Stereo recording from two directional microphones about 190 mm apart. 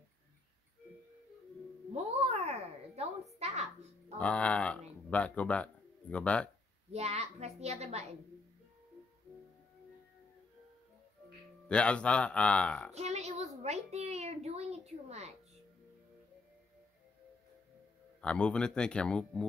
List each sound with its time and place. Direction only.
2.2 s a sound: 35° right (ahead or behind)
4.2 s speech: 5° left (ahead or behind)
6.9 s a woman's voice: 35° right (ahead or behind)
11.7 s a man's voice: 5° left (ahead or behind)
12.9 s a child's voice: 35° right (ahead or behind)
18.2 s a man's voice: 5° left (ahead or behind)